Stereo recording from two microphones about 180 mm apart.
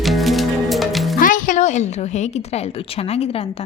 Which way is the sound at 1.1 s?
50° left (ahead or behind).